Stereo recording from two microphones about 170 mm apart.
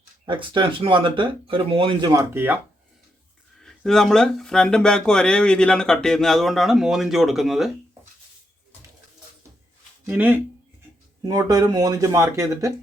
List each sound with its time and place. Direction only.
0.3 s speech: 30° right (ahead or behind)
2.3 s speech: 10° right (ahead or behind)
3.6 s speech: centre (ahead or behind)
10.1 s speech: 10° right (ahead or behind)
11.2 s speech: 25° right (ahead or behind)